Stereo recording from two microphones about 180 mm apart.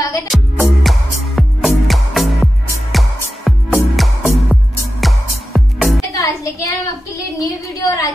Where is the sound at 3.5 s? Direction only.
Centre (ahead or behind).